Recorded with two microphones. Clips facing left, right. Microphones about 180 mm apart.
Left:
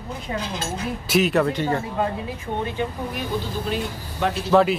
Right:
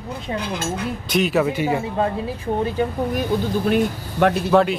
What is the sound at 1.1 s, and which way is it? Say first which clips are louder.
Speech: even; centre (ahead or behind).